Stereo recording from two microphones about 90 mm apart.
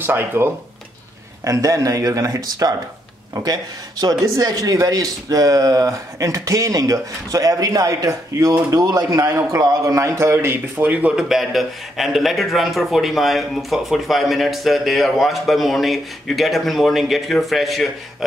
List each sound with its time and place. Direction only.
0.0 s speech: 25° right (ahead or behind)
1.4 s a man's voice: 40° right (ahead or behind); by 17.8 s centre (ahead or behind)